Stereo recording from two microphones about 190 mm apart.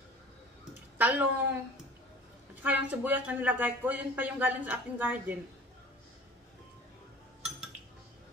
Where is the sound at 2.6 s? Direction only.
10° right (ahead or behind).